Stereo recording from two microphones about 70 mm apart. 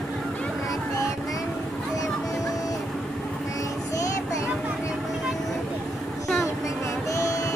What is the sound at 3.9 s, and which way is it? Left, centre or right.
Child singing, left.